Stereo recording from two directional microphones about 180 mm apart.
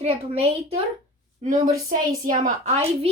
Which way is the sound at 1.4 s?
45° right (ahead or behind).